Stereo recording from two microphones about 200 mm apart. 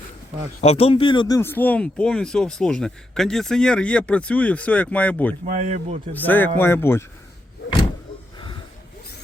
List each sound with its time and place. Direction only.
0.6 s speech: 30° left (ahead or behind)
1.4 s speech: 10° left (ahead or behind)
5.5 s speech: 40° right (ahead or behind)
6.1 s speech: 10° left (ahead or behind)